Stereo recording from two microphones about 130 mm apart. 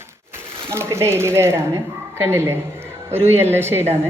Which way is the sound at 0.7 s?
20° right (ahead or behind).